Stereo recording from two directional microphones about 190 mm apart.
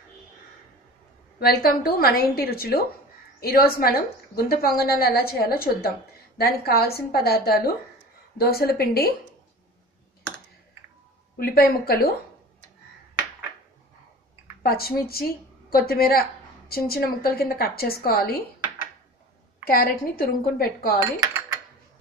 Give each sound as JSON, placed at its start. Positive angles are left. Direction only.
{"t": 1.4, "sound": "a woman's voice", "side_deg": 55}
{"t": 11.3, "sound": "a woman's voice", "side_deg": 55}
{"t": 14.6, "sound": "a woman's voice", "side_deg": 55}
{"t": 19.6, "sound": "a woman's voice", "side_deg": 50}